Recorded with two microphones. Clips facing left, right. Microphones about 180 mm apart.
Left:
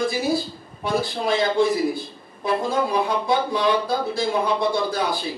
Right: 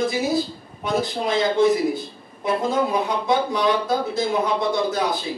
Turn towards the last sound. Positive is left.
turn(degrees=-20)  # may be behind; listen again after turning